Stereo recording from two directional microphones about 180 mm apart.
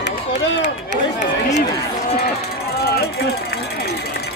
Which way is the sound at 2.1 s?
60° left (ahead or behind).